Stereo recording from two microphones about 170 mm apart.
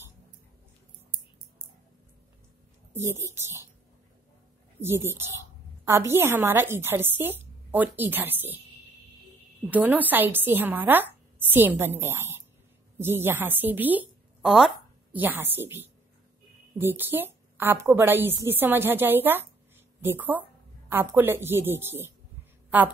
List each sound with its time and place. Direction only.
2.9 s a woman's voice: 15° right (ahead or behind)
4.7 s a woman's voice: 15° right (ahead or behind)
9.7 s a woman's voice: 10° right (ahead or behind)